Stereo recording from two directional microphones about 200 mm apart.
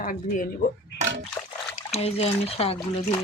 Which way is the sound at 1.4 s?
10° left (ahead or behind).